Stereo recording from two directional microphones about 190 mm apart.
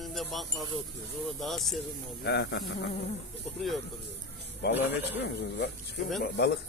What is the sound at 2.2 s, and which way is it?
Speech, 60° left (ahead or behind).